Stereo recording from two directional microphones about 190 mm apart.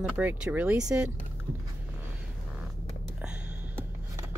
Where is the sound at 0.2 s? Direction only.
10° right (ahead or behind).